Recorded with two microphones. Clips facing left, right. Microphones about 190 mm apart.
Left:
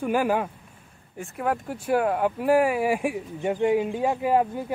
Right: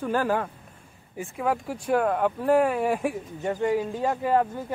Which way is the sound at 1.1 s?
Centre (ahead or behind).